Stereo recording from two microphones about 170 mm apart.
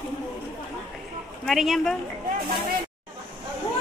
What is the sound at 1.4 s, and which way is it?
Speech, centre (ahead or behind).